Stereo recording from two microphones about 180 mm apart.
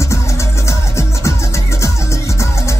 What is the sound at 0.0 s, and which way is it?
Music, 15° left (ahead or behind).